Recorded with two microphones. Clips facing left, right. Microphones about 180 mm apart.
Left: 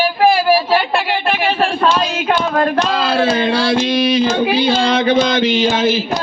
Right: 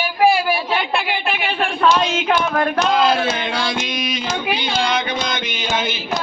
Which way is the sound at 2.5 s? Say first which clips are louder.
Left 2 dB; 30° left (ahead or behind).